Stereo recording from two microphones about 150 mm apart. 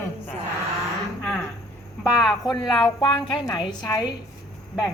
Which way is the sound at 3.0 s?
30° left (ahead or behind).